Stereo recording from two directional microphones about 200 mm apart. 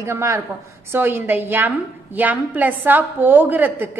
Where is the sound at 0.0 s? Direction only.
15° right (ahead or behind).